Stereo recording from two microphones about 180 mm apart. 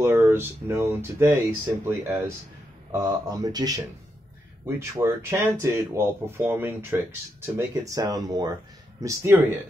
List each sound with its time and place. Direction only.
0.0 s speech: 10° right (ahead or behind)